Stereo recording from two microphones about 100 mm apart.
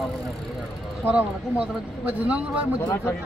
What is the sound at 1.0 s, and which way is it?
Speech, 15° right (ahead or behind).